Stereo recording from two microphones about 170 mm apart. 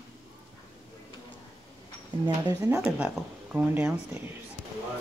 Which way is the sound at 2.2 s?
25° right (ahead or behind).